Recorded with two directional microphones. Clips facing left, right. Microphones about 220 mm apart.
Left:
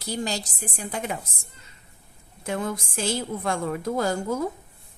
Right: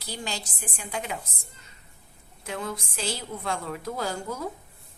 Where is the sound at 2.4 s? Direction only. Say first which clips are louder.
Left 5 dB; 50° left (ahead or behind).